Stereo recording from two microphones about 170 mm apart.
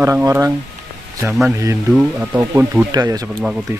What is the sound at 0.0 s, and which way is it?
Speech, 15° right (ahead or behind).